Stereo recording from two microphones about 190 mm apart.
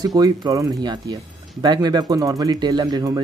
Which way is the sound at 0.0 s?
20° right (ahead or behind).